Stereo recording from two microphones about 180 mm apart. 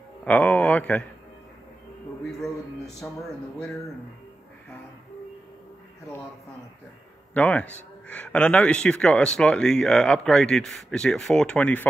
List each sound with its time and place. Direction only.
0.2 s speech: 10° left (ahead or behind)
3.0 s speech: centre (ahead or behind)
7.3 s speech: 10° left (ahead or behind)